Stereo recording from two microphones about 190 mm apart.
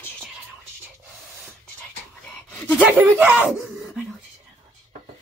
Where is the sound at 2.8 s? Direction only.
10° right (ahead or behind).